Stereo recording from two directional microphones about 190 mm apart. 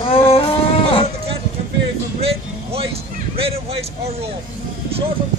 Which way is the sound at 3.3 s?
30° right (ahead or behind).